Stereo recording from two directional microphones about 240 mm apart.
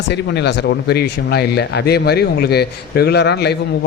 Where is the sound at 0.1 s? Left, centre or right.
Left.